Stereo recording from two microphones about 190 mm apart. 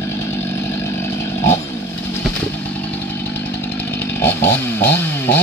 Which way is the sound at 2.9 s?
10° left (ahead or behind).